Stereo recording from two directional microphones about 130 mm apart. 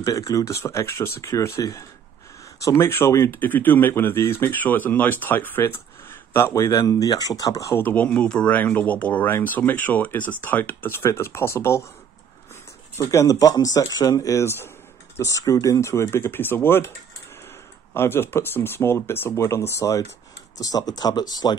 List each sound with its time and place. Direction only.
0.0 s speech: 25° left (ahead or behind)
12.9 s speech: 25° left (ahead or behind)
17.9 s speech: 15° left (ahead or behind)